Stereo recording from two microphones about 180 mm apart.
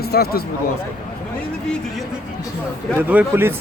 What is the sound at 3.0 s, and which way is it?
Speech, 10° right (ahead or behind).